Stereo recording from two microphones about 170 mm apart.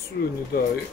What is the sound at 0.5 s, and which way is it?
Speech, 65° left (ahead or behind).